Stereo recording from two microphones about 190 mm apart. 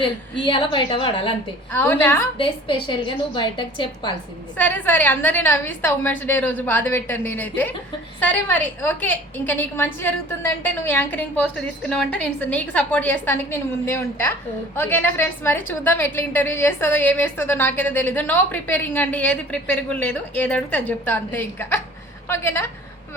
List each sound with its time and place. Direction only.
0.0 s a woman's voice: 25° left (ahead or behind)
1.7 s a woman's voice: 10° left (ahead or behind)
2.4 s a woman's voice: 25° left (ahead or behind)
4.5 s a woman's voice: 10° left (ahead or behind)